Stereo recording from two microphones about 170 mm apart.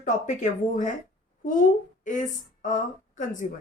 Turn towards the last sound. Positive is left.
turn(degrees=50)  # may be behind; listen again after turning